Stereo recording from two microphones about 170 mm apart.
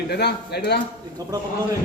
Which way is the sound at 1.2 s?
20° right (ahead or behind).